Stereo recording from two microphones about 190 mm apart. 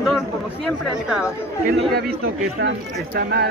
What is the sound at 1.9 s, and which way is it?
Speech, 55° right (ahead or behind).